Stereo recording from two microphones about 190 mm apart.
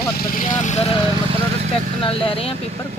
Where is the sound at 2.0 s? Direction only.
30° left (ahead or behind).